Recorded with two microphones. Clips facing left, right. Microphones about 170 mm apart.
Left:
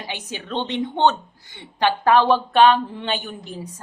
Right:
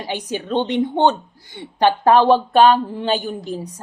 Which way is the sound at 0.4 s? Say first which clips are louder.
Right 5 dB; 15° right (ahead or behind).